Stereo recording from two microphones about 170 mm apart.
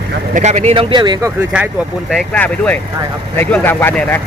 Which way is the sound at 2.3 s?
10° left (ahead or behind).